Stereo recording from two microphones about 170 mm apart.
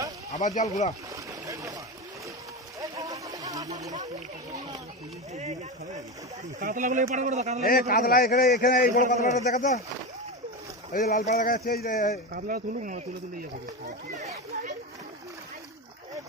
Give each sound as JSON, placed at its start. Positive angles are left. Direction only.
{"t": 0.6, "sound": "speech", "side_deg": 40}
{"t": 1.1, "sound": "boat", "side_deg": -20}
{"t": 2.8, "sound": "a sound", "side_deg": -20}
{"t": 5.3, "sound": "speech", "side_deg": -40}
{"t": 6.6, "sound": "speech", "side_deg": -50}
{"t": 7.6, "sound": "a man's voice", "side_deg": 60}
{"t": 10.9, "sound": "a man's voice", "side_deg": 50}
{"t": 12.4, "sound": "speech", "side_deg": -60}